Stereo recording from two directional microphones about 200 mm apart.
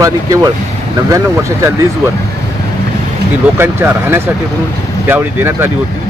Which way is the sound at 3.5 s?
10° right (ahead or behind).